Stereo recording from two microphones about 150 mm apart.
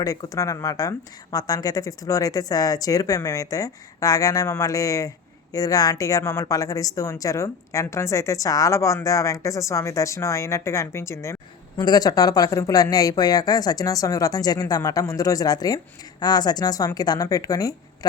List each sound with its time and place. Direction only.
0.0 s speech: 25° left (ahead or behind)